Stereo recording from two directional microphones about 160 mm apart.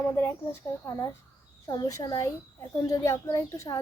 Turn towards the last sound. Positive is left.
turn(degrees=20)  # may be behind; listen again after turning